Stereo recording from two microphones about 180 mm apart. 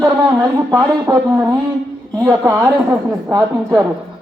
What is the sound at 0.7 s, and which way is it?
A man's voice, 10° right (ahead or behind).